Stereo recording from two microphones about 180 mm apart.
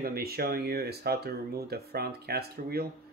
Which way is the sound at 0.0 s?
60° right (ahead or behind).